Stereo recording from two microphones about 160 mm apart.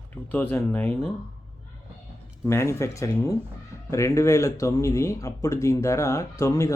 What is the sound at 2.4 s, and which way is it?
Speech, 15° left (ahead or behind).